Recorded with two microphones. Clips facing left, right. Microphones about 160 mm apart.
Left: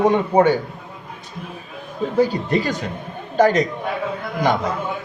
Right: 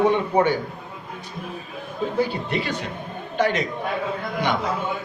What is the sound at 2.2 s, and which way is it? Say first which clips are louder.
Speech: left 7 dB; 40° left (ahead or behind).